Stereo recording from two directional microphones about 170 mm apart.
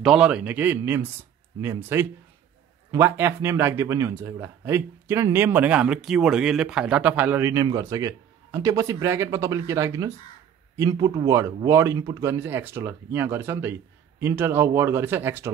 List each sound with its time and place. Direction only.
0.0 s speech: 5° right (ahead or behind)